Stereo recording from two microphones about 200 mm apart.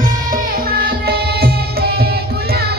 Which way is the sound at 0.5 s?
50° right (ahead or behind).